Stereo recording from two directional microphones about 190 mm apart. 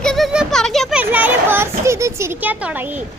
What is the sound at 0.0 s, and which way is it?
Children playing, centre (ahead or behind).